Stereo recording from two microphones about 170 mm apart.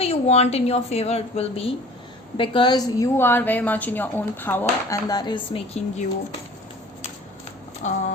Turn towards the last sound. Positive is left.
turn(degrees=45)  # may be behind; listen again after turning